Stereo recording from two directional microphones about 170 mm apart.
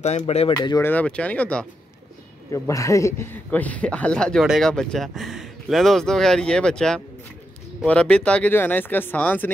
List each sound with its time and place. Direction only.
0.0 s speech: 40° left (ahead or behind)
0.5 s speech: 20° left (ahead or behind)
2.5 s speech: 20° left (ahead or behind)